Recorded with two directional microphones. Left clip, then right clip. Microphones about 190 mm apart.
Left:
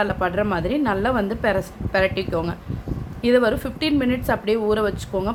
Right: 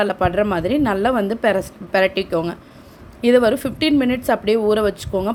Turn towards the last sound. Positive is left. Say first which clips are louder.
# right 3 dB
turn(degrees=-30)  # may be behind; listen again after turning